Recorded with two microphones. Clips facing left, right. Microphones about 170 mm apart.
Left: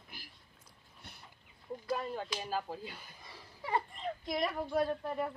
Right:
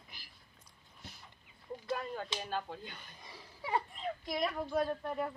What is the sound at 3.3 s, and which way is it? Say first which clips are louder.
A child's voice: even; 10° right (ahead or behind).